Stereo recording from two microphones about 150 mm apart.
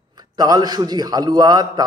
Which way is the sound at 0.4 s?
25° right (ahead or behind).